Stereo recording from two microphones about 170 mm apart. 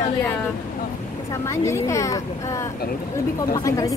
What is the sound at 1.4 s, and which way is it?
Speech, 15° left (ahead or behind).